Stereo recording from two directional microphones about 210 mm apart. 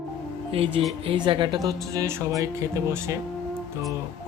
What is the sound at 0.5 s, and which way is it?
Music, 25° right (ahead or behind).